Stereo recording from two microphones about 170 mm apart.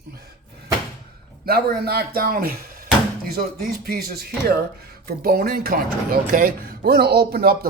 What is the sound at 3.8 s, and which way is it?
Speech, 60° right (ahead or behind).